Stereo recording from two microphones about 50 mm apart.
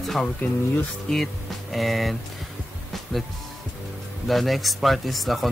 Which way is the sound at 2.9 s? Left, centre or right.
Centre.